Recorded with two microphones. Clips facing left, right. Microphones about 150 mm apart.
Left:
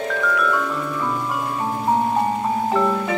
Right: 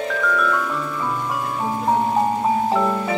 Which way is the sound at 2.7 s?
5° right (ahead or behind).